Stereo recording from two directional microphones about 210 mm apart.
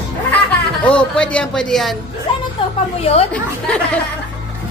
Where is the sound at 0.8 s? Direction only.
5° left (ahead or behind).